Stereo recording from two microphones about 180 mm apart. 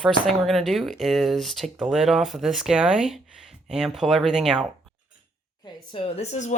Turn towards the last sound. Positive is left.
turn(degrees=40)  # may be behind; listen again after turning